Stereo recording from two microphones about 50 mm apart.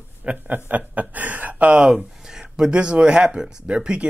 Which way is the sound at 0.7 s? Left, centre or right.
Right.